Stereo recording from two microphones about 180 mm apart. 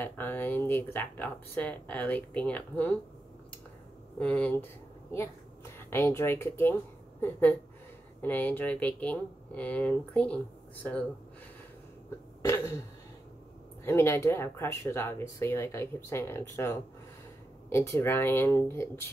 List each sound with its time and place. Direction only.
0.0 s speech: 10° left (ahead or behind)
4.2 s speech: 5° left (ahead or behind)
5.8 s speech: 15° left (ahead or behind)
12.4 s throat clearing: 15° left (ahead or behind)
13.8 s speech: 15° left (ahead or behind)